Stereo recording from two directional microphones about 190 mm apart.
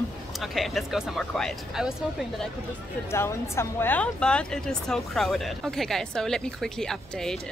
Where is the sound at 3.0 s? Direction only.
15° left (ahead or behind).